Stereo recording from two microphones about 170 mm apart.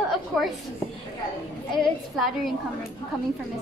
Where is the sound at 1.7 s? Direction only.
Centre (ahead or behind).